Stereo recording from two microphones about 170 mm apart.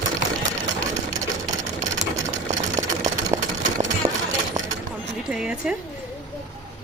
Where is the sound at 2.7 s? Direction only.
20° right (ahead or behind).